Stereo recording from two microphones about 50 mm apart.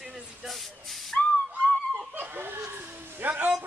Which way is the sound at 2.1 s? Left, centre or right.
Right.